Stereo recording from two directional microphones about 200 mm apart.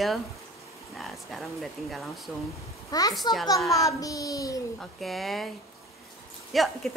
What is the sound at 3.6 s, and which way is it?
Speech, centre (ahead or behind).